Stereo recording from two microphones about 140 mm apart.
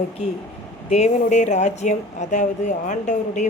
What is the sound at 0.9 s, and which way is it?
A woman's voice, 55° left (ahead or behind).